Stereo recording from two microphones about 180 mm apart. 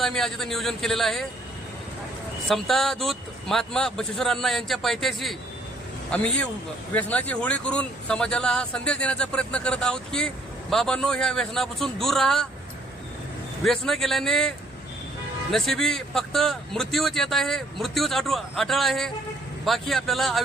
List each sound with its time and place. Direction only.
0.0 s speech: centre (ahead or behind)
2.5 s a man's voice: centre (ahead or behind)
13.7 s speech: centre (ahead or behind)
15.5 s speech: centre (ahead or behind)